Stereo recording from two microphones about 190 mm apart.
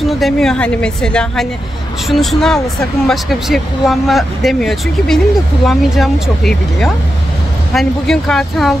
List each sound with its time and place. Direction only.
0.2 s speech: 5° left (ahead or behind)